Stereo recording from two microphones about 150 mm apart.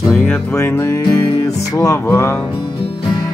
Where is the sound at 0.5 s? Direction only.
15° left (ahead or behind).